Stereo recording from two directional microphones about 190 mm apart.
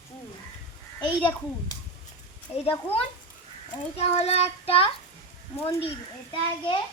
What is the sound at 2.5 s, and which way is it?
Speech, 5° right (ahead or behind).